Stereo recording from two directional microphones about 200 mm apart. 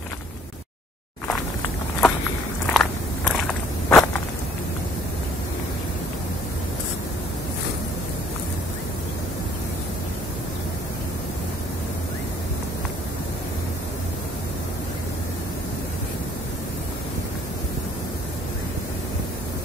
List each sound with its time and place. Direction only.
1.2 s walk: 5° left (ahead or behind)